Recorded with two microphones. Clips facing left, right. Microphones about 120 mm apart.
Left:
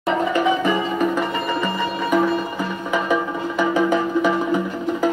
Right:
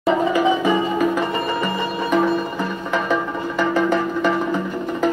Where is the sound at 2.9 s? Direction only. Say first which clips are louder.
Left 1 dB; 10° left (ahead or behind).